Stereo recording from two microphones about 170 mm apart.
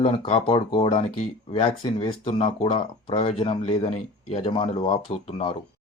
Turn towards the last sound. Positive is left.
turn(degrees=35)  # may be behind; listen again after turning